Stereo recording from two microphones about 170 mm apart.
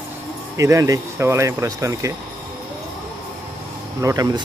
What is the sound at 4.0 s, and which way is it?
Speech, 20° right (ahead or behind).